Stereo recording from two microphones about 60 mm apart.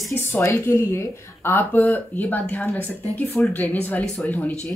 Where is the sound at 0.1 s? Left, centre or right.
Left.